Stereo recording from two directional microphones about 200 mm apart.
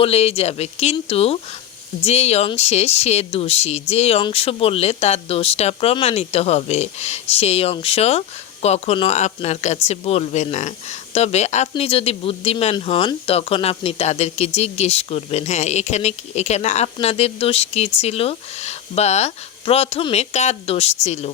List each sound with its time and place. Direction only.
0.0 s speech: 30° left (ahead or behind)